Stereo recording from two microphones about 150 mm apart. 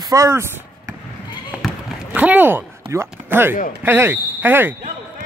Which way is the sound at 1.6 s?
10° right (ahead or behind).